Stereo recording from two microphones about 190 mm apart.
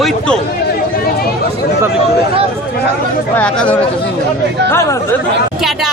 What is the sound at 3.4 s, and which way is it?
Speech, 5° left (ahead or behind).